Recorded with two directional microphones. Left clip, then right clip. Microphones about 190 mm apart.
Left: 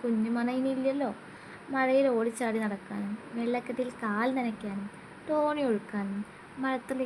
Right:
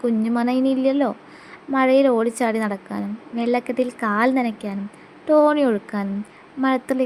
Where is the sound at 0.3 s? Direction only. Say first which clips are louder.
Right 10 dB; 30° right (ahead or behind).